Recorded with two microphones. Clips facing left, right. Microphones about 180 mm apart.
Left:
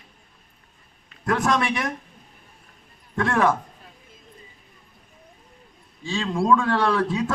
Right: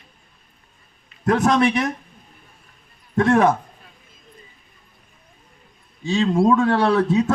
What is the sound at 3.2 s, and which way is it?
Speech, 20° right (ahead or behind).